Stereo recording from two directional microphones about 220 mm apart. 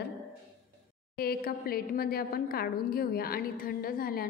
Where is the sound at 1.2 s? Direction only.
45° left (ahead or behind).